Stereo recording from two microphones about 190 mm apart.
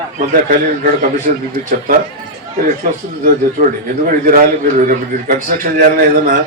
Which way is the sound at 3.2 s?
45° right (ahead or behind).